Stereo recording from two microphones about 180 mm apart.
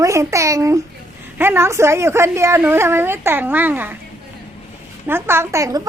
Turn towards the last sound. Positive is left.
turn(degrees=-20)  # may be behind; listen again after turning